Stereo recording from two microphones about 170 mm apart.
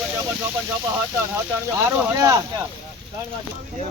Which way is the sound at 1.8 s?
15° right (ahead or behind).